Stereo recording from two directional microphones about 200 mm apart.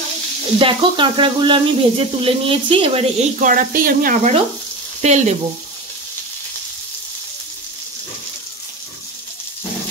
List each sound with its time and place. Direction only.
0.6 s speech: 25° right (ahead or behind)